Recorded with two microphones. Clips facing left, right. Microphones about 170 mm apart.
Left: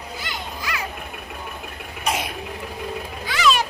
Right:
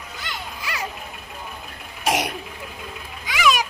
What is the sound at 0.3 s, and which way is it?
Children playing, centre (ahead or behind).